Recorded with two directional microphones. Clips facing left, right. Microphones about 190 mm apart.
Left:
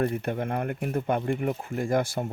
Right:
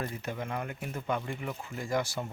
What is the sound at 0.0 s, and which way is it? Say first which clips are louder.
Speech: left 9 dB; 60° left (ahead or behind).